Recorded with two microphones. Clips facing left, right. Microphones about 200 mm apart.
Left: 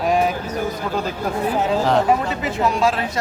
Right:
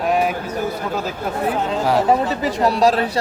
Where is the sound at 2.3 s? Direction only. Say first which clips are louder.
Right 2 dB; 35° right (ahead or behind).